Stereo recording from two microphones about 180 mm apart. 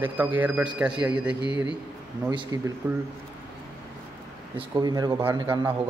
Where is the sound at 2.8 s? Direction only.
10° right (ahead or behind).